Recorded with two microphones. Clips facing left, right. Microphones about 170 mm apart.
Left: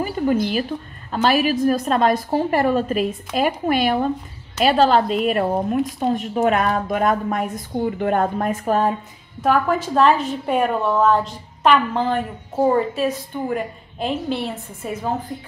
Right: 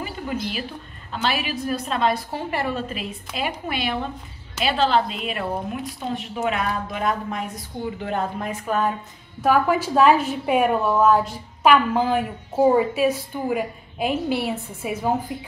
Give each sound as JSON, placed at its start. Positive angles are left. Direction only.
{"t": 0.0, "sound": "a woman's voice", "side_deg": 45}
{"t": 9.4, "sound": "a woman's voice", "side_deg": -5}